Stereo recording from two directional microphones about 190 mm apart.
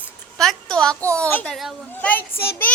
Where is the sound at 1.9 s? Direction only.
10° left (ahead or behind).